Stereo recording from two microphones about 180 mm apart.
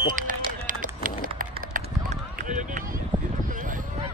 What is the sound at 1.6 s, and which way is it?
Run, 45° right (ahead or behind).